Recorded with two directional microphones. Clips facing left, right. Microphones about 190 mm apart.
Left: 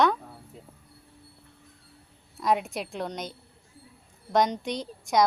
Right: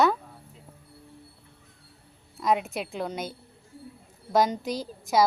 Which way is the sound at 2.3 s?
Centre (ahead or behind).